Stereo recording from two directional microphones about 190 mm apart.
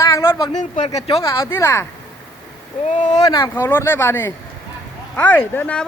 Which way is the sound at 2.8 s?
40° left (ahead or behind).